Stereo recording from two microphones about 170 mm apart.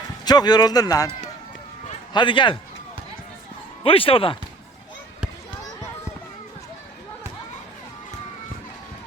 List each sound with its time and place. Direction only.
0.3 s a man's voice: 25° left (ahead or behind)
2.1 s a man's voice: 30° left (ahead or behind)
3.8 s speech: 35° left (ahead or behind)